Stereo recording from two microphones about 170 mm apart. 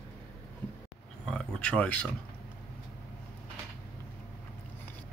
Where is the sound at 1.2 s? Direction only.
5° left (ahead or behind).